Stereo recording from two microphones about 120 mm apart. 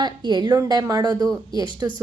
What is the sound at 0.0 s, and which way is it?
A woman's voice, 40° right (ahead or behind).